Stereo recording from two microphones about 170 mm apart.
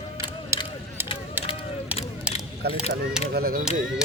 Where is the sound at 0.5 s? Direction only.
15° right (ahead or behind).